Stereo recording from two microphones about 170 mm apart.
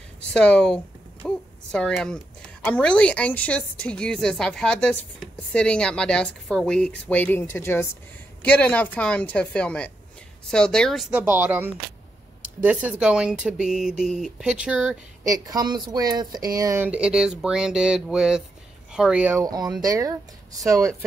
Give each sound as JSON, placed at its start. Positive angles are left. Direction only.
{"t": 0.3, "sound": "a woman's voice", "side_deg": 5}
{"t": 15.2, "sound": "a woman's voice", "side_deg": -20}
{"t": 19.4, "sound": "speech", "side_deg": -20}